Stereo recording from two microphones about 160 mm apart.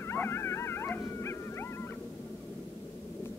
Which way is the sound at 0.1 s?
15° left (ahead or behind).